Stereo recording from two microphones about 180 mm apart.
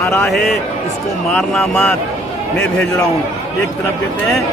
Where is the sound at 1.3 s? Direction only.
5° left (ahead or behind).